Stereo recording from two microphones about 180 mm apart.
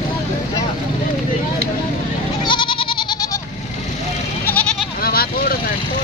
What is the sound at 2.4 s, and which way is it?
Goat, 25° left (ahead or behind).